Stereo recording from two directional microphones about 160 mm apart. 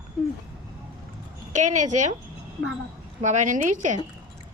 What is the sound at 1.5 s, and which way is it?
Speech, 50° right (ahead or behind).